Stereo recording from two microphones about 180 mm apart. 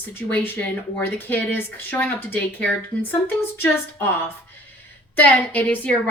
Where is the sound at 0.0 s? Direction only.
10° left (ahead or behind).